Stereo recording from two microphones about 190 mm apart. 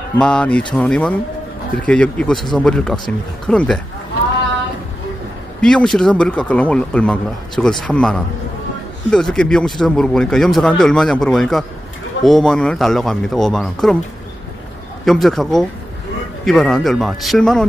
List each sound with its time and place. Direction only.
0.2 s speech: 5° left (ahead or behind)
5.6 s speech: 5° left (ahead or behind)
15.0 s speech: centre (ahead or behind)